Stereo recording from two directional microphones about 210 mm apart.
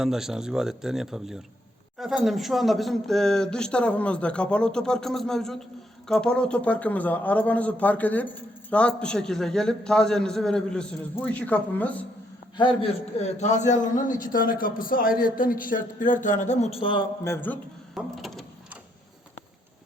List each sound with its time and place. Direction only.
0.0 s a man's voice: centre (ahead or behind)
12.5 s a man's voice: 25° left (ahead or behind)
16.7 s speech: 25° left (ahead or behind)
17.2 s a man's voice: 10° left (ahead or behind)
17.9 s a sound: centre (ahead or behind)